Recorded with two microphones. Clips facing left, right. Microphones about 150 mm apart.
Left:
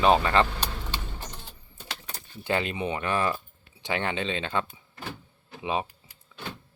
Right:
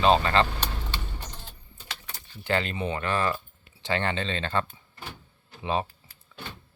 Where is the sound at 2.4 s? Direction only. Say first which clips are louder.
Even; 15° left (ahead or behind).